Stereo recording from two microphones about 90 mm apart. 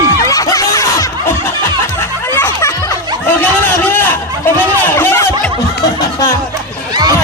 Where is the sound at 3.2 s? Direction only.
25° left (ahead or behind).